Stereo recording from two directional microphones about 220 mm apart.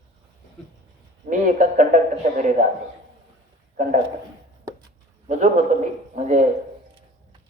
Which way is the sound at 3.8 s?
35° right (ahead or behind).